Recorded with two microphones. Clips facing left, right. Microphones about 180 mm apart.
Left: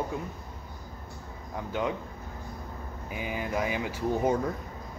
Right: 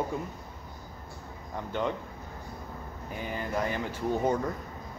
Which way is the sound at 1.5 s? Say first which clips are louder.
Left 1 dB; 5° left (ahead or behind).